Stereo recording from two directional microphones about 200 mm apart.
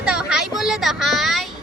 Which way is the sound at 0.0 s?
5° right (ahead or behind).